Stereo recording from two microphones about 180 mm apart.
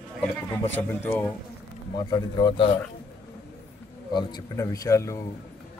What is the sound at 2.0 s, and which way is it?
Speech, 20° left (ahead or behind).